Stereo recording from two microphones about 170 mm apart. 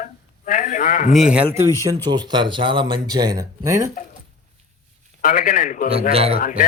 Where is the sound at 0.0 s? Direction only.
50° left (ahead or behind).